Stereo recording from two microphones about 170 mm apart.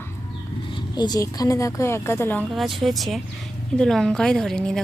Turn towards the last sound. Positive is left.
turn(degrees=5)  # may be behind; listen again after turning